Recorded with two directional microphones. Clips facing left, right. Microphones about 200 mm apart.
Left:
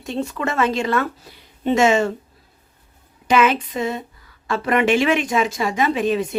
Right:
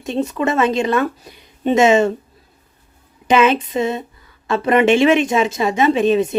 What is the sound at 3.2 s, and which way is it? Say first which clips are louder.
Speech: right 3 dB; 25° right (ahead or behind).